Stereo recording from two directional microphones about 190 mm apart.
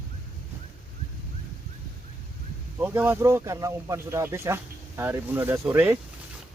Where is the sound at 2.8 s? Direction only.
10° right (ahead or behind).